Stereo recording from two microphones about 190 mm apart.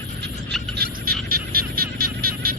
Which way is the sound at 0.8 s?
50° right (ahead or behind).